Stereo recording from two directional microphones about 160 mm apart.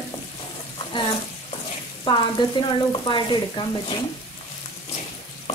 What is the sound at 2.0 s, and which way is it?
Frying, 30° left (ahead or behind).